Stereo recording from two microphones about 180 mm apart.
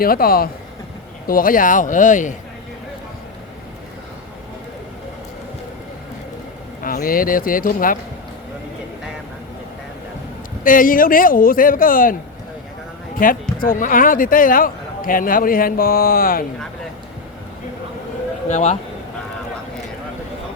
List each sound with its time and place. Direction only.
0.0 s speech: 55° left (ahead or behind)
6.8 s speech: 50° left (ahead or behind)
10.6 s speech: 50° left (ahead or behind)
13.1 s speech: 50° left (ahead or behind)
18.4 s speech: 40° left (ahead or behind)